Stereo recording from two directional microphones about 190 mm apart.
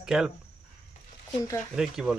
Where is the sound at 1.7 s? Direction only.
5° right (ahead or behind).